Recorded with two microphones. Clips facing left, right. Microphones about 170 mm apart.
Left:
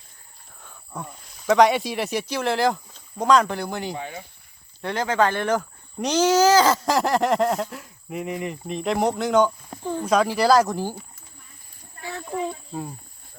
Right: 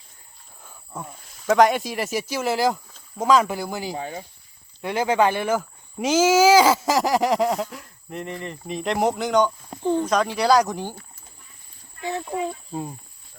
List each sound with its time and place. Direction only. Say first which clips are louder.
0.6 s cricket: even; 5° right (ahead or behind)
2.3 s a child's voice: even; 5° right (ahead or behind)
3.9 s speech: right 2 dB; 35° right (ahead or behind)
4.8 s a child's voice: right 2 dB; 10° right (ahead or behind)
12.0 s speech: right 4 dB; 20° right (ahead or behind)